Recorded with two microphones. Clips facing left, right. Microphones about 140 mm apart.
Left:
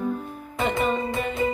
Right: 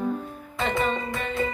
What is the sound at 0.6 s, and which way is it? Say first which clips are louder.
Music: left 2 dB; 15° left (ahead or behind).